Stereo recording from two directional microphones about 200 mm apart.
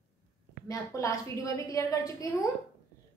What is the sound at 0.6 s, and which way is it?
A woman's voice, 15° left (ahead or behind).